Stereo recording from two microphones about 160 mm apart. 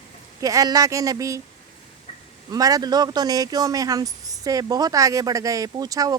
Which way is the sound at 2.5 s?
20° right (ahead or behind).